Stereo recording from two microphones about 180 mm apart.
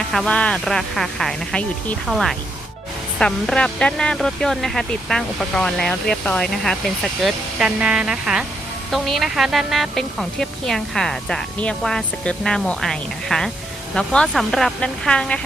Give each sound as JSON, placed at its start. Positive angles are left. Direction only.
{"t": 0.1, "sound": "speech", "side_deg": 5}